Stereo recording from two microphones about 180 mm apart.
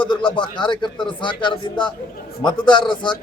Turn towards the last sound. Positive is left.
turn(degrees=25)  # may be behind; listen again after turning